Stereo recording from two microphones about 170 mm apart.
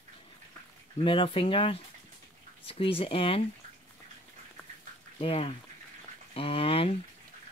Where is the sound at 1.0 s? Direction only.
30° left (ahead or behind).